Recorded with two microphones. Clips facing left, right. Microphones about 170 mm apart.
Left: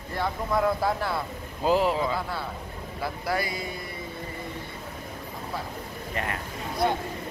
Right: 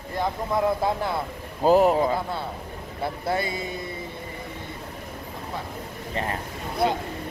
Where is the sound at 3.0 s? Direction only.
25° right (ahead or behind).